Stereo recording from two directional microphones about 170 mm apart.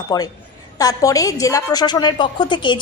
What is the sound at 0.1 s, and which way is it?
A woman's voice, 20° left (ahead or behind).